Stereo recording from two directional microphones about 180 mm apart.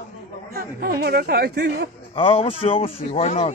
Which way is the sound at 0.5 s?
60° right (ahead or behind).